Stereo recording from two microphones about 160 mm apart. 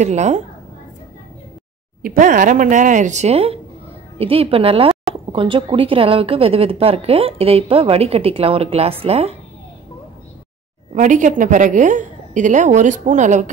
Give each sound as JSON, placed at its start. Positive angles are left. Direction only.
{"t": 0.0, "sound": "a woman's voice", "side_deg": -45}
{"t": 2.0, "sound": "a woman's voice", "side_deg": -55}
{"t": 11.0, "sound": "a woman's voice", "side_deg": -50}